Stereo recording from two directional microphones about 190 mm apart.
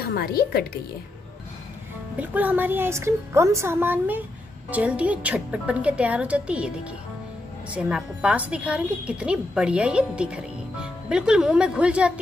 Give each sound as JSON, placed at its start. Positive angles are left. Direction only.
{"t": 0.1, "sound": "a woman's voice", "side_deg": 55}
{"t": 2.1, "sound": "a woman's voice", "side_deg": -10}